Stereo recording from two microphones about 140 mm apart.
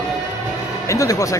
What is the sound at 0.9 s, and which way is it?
Speech, 25° left (ahead or behind).